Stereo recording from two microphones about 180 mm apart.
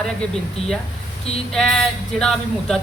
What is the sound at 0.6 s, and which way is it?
Speech, 35° left (ahead or behind).